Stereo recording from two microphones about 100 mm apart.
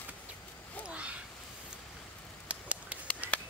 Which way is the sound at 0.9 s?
10° right (ahead or behind).